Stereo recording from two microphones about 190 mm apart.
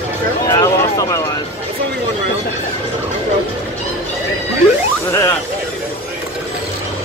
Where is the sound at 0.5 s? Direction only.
20° left (ahead or behind).